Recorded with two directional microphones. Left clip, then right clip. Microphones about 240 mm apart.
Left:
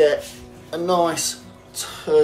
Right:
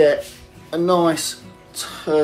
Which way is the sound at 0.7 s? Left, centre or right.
Right.